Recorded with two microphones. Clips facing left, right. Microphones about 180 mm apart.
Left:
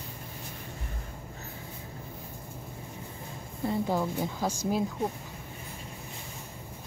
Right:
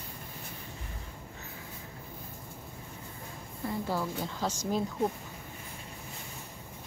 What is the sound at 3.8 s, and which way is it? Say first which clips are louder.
Speech: left 4 dB; 15° left (ahead or behind).